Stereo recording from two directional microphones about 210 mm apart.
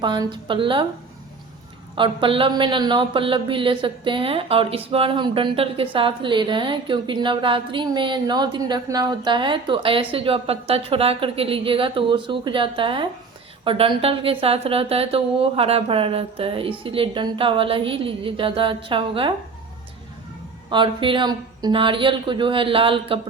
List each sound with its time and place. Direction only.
0.0 s a woman's voice: 20° right (ahead or behind)
2.0 s a woman's voice: 25° right (ahead or behind)
20.7 s a woman's voice: 20° right (ahead or behind)